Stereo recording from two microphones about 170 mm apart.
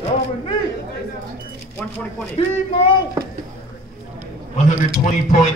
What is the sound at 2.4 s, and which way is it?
Speech, 35° left (ahead or behind).